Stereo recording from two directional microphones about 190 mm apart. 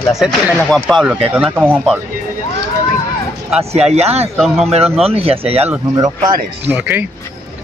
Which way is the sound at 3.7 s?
35° right (ahead or behind).